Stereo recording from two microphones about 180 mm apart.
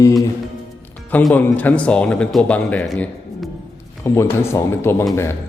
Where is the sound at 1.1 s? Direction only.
10° left (ahead or behind).